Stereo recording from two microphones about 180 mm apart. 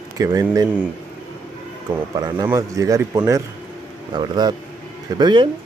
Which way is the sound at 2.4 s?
20° right (ahead or behind).